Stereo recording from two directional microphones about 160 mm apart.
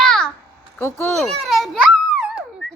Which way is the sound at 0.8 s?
15° left (ahead or behind).